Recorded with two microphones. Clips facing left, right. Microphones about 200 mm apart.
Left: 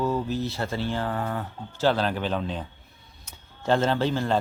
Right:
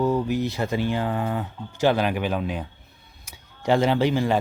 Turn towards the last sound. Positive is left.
turn(degrees=-15)  # may be behind; listen again after turning